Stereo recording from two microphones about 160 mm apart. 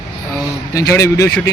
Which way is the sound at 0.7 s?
20° left (ahead or behind).